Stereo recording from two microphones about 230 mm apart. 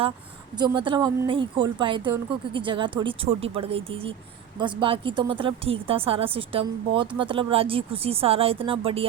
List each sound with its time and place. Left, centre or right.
0.5 s speech: centre